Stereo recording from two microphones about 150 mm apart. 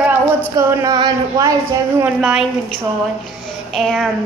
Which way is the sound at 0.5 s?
20° right (ahead or behind).